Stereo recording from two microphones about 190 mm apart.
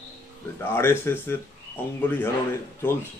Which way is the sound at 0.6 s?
10° left (ahead or behind).